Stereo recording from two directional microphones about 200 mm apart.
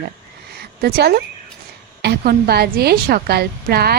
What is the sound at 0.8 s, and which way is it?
Speech, 50° right (ahead or behind).